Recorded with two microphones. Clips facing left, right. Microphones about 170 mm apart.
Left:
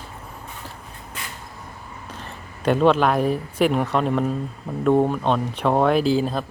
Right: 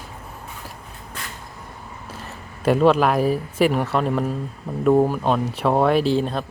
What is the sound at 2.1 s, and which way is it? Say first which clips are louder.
Speech: right 1 dB; 5° right (ahead or behind).